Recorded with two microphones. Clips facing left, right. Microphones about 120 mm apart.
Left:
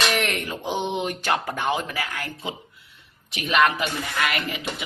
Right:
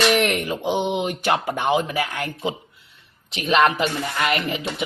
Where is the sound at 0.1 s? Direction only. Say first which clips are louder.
Right 5 dB; 20° right (ahead or behind).